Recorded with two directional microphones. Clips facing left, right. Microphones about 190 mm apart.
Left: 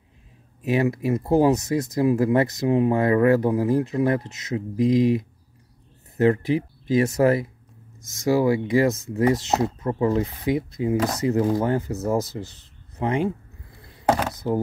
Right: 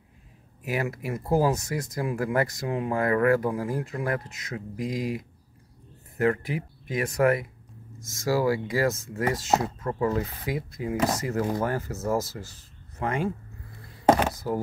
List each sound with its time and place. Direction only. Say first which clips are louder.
0.6 s speech: left 8 dB; 25° left (ahead or behind)
14.4 s speech: left 9 dB; 25° left (ahead or behind)